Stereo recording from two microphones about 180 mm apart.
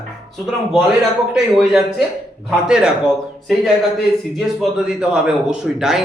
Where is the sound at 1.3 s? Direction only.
Centre (ahead or behind).